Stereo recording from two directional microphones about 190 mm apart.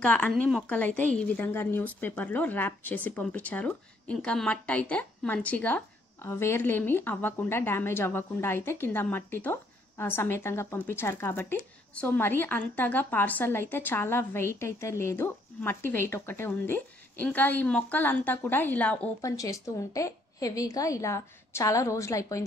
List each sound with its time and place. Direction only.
0.0 s a woman's voice: 5° left (ahead or behind)